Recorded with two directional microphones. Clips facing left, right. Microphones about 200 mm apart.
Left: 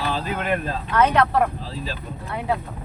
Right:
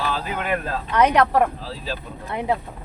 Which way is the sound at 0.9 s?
15° right (ahead or behind).